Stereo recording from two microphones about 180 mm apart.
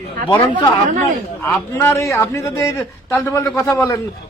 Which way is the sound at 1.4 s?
10° left (ahead or behind).